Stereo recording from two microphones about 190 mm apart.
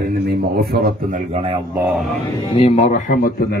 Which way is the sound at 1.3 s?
30° right (ahead or behind).